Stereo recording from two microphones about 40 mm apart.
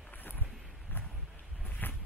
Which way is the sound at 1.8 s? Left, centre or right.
Left.